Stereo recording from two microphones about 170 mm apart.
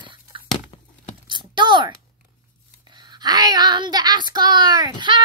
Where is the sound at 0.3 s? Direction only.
30° right (ahead or behind).